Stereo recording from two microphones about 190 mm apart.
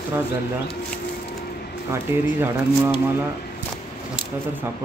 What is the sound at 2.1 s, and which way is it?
Speech, 15° right (ahead or behind).